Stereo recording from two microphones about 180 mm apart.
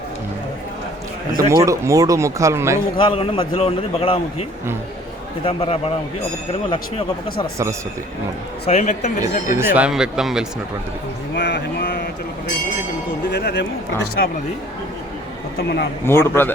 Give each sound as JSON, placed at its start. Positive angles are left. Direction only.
{"t": 1.4, "sound": "speech", "side_deg": -20}
{"t": 3.0, "sound": "a man's voice", "side_deg": 30}
{"t": 8.6, "sound": "a man's voice", "side_deg": 40}
{"t": 9.6, "sound": "speech", "side_deg": -10}
{"t": 11.3, "sound": "speech", "side_deg": 80}
{"t": 13.2, "sound": "speech", "side_deg": 70}
{"t": 15.5, "sound": "speech", "side_deg": 70}
{"t": 16.0, "sound": "a man's voice", "side_deg": 15}